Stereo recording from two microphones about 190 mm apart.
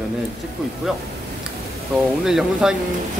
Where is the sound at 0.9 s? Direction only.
Centre (ahead or behind).